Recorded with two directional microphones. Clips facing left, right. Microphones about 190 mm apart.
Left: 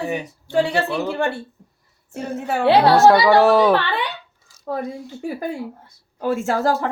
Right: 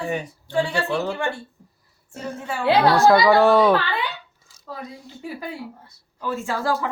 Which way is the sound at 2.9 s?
Centre (ahead or behind).